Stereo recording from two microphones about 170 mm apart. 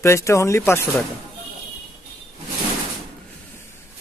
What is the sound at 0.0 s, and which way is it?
Speech, 15° left (ahead or behind).